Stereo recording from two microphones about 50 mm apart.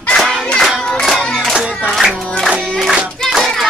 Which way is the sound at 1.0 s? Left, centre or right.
Centre.